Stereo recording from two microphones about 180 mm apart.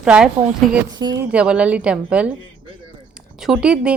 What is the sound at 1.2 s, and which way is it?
A woman's voice, 5° right (ahead or behind).